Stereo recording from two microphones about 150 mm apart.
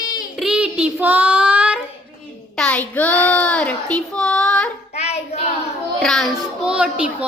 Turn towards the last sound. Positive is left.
turn(degrees=-10)  # may be behind; listen again after turning